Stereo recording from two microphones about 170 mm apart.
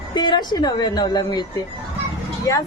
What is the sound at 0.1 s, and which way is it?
Speech, 25° left (ahead or behind).